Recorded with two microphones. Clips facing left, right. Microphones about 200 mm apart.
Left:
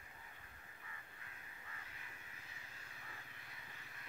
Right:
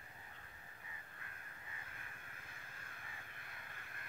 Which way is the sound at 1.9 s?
55° right (ahead or behind).